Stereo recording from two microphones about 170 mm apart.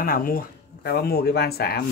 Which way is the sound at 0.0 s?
55° left (ahead or behind).